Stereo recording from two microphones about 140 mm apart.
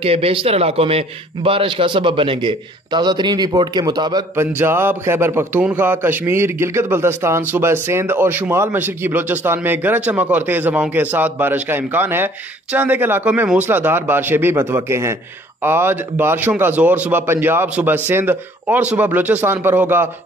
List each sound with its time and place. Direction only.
0.0 s a man's voice: 45° right (ahead or behind)
4.6 s a man's voice: 15° right (ahead or behind)